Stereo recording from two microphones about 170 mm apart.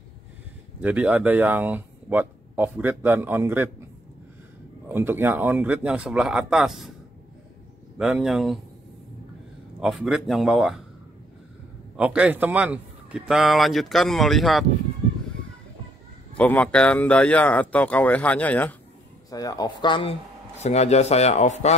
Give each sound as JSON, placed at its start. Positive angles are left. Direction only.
{"t": 0.7, "sound": "speech", "side_deg": -10}
{"t": 4.8, "sound": "speech", "side_deg": -10}
{"t": 8.0, "sound": "a man's voice", "side_deg": -5}
{"t": 9.8, "sound": "a man's voice", "side_deg": 0}
{"t": 12.0, "sound": "a man's voice", "side_deg": -5}
{"t": 16.3, "sound": "speech", "side_deg": 5}
{"t": 19.3, "sound": "speech", "side_deg": 20}